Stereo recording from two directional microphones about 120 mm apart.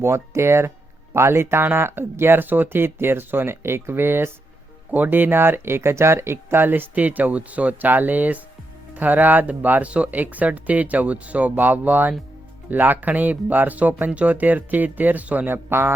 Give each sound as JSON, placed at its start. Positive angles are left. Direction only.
{"t": 0.0, "sound": "speech", "side_deg": -20}